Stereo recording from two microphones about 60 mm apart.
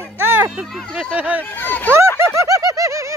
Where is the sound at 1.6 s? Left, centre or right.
Left.